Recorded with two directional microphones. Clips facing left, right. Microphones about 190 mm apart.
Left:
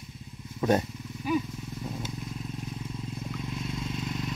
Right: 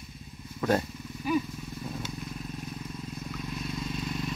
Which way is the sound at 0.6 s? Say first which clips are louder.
Left 2 dB; 20° left (ahead or behind).